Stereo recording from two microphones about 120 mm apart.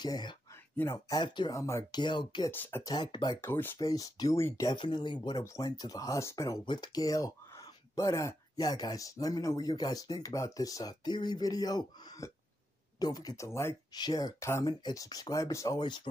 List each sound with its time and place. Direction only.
0.0 s speech: 35° left (ahead or behind)
0.7 s speech: 20° left (ahead or behind)
1.1 s speech: 40° left (ahead or behind)
1.5 s speech: 25° left (ahead or behind)
2.5 s speech: 15° left (ahead or behind)
2.8 s speech: 35° left (ahead or behind)
3.3 s speech: 20° left (ahead or behind)
3.8 s speech: 30° left (ahead or behind)
4.6 s speech: 40° left (ahead or behind)
5.4 s speech: 30° left (ahead or behind)
6.6 s speech: 40° left (ahead or behind)
13.5 s speech: 20° left (ahead or behind)
13.9 s speech: 35° left (ahead or behind)